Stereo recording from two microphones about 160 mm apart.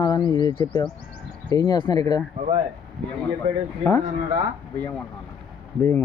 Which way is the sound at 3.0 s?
5° left (ahead or behind).